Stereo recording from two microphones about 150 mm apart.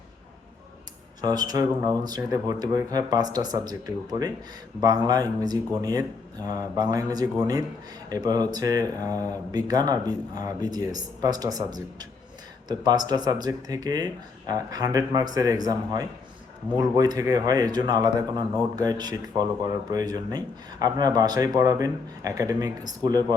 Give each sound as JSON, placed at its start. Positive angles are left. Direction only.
{"t": 1.2, "sound": "speech", "side_deg": -25}